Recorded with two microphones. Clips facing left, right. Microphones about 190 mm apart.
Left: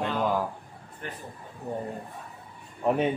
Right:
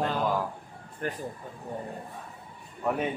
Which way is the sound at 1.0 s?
45° right (ahead or behind).